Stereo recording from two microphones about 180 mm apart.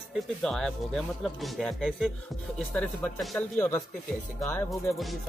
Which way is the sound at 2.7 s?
5° left (ahead or behind).